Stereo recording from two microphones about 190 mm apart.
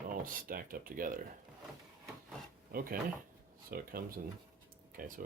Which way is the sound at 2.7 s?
50° right (ahead or behind).